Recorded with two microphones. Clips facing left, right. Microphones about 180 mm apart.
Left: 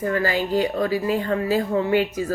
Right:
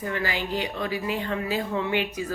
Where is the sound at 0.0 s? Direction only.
40° left (ahead or behind).